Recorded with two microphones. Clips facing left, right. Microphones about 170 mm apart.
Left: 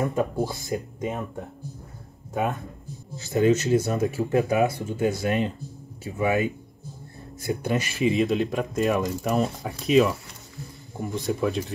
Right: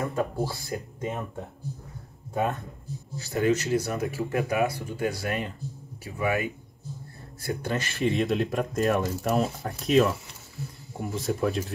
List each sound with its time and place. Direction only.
0.0 s speech: 20° left (ahead or behind)
3.2 s a man's voice: 20° left (ahead or behind)
7.9 s speech: centre (ahead or behind)